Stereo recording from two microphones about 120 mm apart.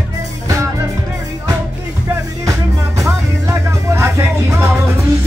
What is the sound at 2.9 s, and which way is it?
Music, 25° right (ahead or behind).